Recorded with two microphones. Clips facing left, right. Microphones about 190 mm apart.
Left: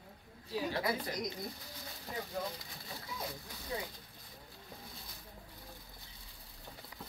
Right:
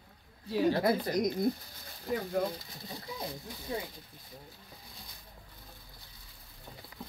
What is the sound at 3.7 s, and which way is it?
Speech, 25° right (ahead or behind).